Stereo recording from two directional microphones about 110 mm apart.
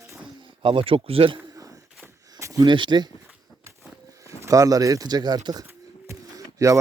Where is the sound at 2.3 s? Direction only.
25° right (ahead or behind).